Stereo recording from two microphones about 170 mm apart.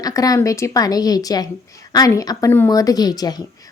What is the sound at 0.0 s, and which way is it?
A woman's voice, 20° left (ahead or behind).